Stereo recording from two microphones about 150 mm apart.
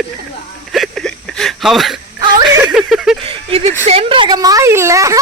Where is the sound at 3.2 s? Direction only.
40° right (ahead or behind).